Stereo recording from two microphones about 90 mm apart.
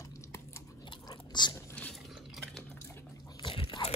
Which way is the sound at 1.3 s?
55° left (ahead or behind).